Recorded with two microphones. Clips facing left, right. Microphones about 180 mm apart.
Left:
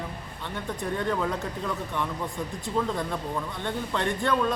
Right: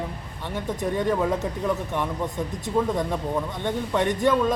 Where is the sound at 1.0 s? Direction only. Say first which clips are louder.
Right 5 dB; 20° right (ahead or behind).